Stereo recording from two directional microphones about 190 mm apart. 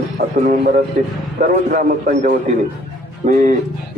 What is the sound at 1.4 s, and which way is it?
Speech, 45° right (ahead or behind).